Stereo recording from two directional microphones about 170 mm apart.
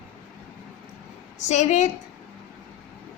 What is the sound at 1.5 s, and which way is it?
Speech, 45° left (ahead or behind).